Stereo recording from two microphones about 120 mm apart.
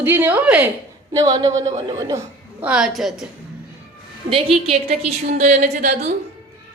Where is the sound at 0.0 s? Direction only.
15° right (ahead or behind).